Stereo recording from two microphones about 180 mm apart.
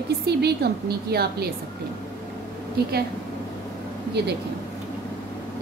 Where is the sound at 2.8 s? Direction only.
60° right (ahead or behind).